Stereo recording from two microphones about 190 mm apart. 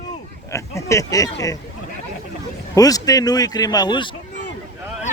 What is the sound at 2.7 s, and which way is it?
Speech, 20° left (ahead or behind).